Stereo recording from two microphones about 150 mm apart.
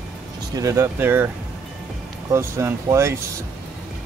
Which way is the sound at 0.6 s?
20° right (ahead or behind).